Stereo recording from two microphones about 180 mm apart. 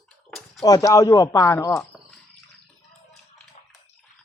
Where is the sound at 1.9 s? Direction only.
Centre (ahead or behind).